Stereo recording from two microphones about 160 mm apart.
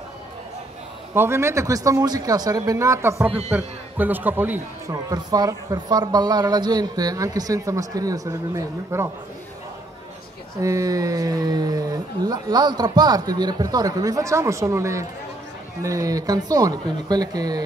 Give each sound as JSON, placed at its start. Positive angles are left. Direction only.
{"t": 1.1, "sound": "a man's voice", "side_deg": -15}
{"t": 10.6, "sound": "a man's voice", "side_deg": -20}